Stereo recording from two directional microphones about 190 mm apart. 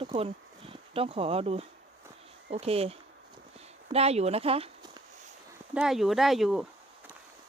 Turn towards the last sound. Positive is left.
turn(degrees=0)  # may be behind; listen again after turning